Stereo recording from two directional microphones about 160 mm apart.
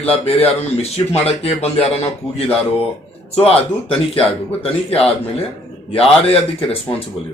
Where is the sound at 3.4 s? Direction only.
40° left (ahead or behind).